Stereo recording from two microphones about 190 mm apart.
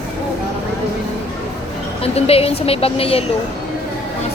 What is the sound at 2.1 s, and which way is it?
Speech, 30° left (ahead or behind).